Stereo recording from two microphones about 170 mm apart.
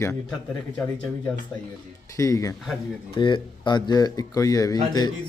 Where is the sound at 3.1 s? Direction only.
30° left (ahead or behind).